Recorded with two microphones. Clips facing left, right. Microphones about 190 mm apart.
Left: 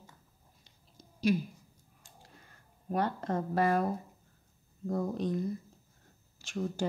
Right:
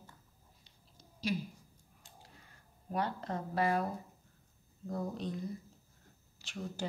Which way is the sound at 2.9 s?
45° left (ahead or behind).